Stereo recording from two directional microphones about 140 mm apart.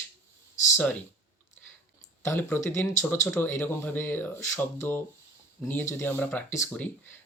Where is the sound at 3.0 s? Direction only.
5° left (ahead or behind).